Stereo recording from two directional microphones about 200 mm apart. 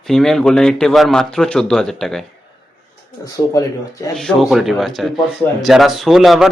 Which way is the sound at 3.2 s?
15° left (ahead or behind).